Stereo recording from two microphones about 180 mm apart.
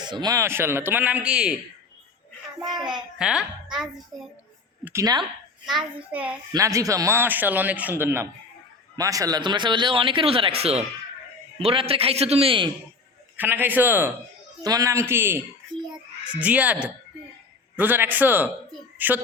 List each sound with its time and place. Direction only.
0.0 s a man's voice: 25° right (ahead or behind); by 1.5 s 5° right (ahead or behind)
3.2 s speech: 5° right (ahead or behind)
4.9 s speech: 20° right (ahead or behind)
5.6 s a man's voice: 5° right (ahead or behind)
6.5 s a man's voice: 20° right (ahead or behind)
13.3 s a man's voice: 10° right (ahead or behind)
16.4 s a man's voice: 5° right (ahead or behind)